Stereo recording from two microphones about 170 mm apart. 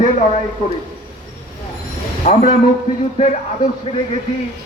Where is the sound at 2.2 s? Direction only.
45° left (ahead or behind).